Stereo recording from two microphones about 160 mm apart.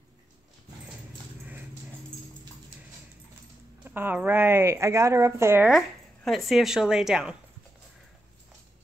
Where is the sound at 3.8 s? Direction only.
10° right (ahead or behind).